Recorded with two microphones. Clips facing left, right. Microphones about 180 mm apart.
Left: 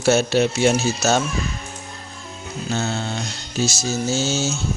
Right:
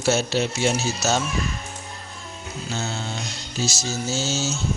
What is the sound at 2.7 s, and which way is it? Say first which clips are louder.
Music: left 5 dB; 60° left (ahead or behind).